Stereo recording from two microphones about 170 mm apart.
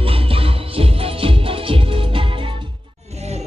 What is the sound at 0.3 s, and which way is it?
Music, 35° right (ahead or behind).